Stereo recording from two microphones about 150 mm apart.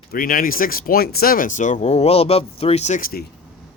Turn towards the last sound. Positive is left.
turn(degrees=90)